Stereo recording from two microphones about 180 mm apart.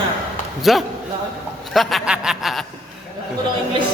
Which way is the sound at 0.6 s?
Centre (ahead or behind).